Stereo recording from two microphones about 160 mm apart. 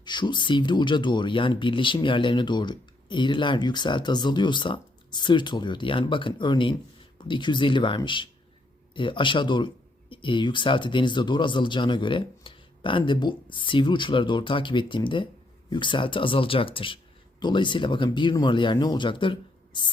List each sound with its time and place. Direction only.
0.0 s speech: 30° left (ahead or behind)